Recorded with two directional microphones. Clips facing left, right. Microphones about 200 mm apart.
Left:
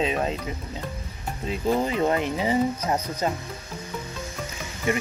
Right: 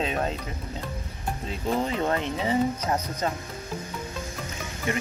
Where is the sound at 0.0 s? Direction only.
5° left (ahead or behind).